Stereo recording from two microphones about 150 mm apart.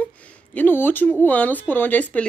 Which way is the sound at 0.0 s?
10° left (ahead or behind).